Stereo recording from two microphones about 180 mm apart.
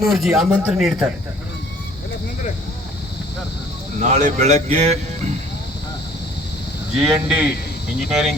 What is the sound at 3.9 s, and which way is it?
Speech, 40° right (ahead or behind).